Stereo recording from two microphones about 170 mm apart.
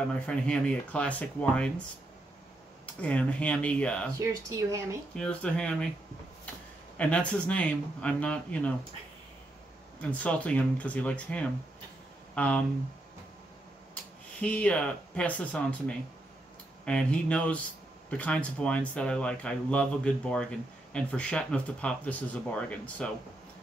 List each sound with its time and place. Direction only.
0.1 s speech: 5° left (ahead or behind)
3.0 s speech: 10° left (ahead or behind)
4.2 s speech: 20° right (ahead or behind)
5.1 s speech: 5° left (ahead or behind)
7.0 s speech: 5° left (ahead or behind)
10.0 s speech: 10° left (ahead or behind)
14.4 s speech: 5° left (ahead or behind)
16.8 s speech: 5° left (ahead or behind)